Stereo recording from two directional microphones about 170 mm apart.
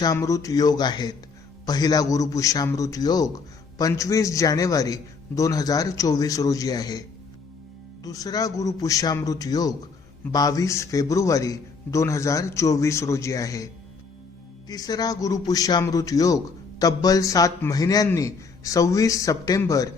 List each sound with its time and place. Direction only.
0.0 s a man's voice: 20° left (ahead or behind)
8.0 s a man's voice: 20° left (ahead or behind)
14.7 s a man's voice: 25° left (ahead or behind)